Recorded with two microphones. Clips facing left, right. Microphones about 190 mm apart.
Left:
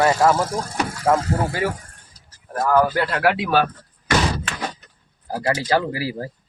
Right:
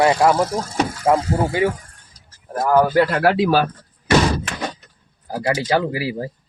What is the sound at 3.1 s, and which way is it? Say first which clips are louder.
Speech: right 3 dB; 35° right (ahead or behind).